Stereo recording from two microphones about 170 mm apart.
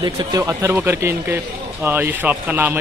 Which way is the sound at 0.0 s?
25° right (ahead or behind).